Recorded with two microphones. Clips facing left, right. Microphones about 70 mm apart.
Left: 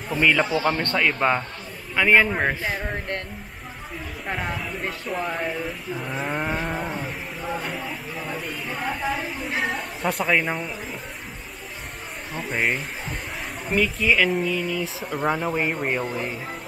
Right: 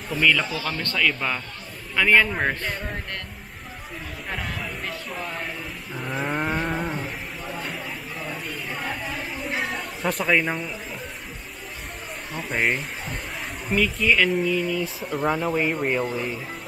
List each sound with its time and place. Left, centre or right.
0.1 s speech: centre
2.0 s speech: centre
4.3 s speech: left
5.9 s speech: centre
8.3 s a sound: centre
12.3 s speech: centre